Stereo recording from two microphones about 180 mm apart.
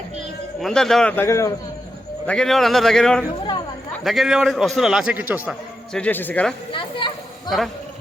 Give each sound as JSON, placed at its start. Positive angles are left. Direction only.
{"t": 0.6, "sound": "a man's voice", "side_deg": 5}
{"t": 2.2, "sound": "a man's voice", "side_deg": 5}
{"t": 5.9, "sound": "a man's voice", "side_deg": 10}
{"t": 6.7, "sound": "a sound", "side_deg": 25}